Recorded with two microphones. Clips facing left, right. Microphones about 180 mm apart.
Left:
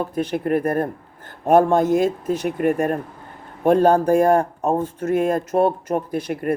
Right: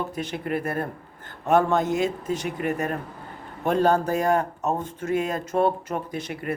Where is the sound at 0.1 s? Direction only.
50° left (ahead or behind).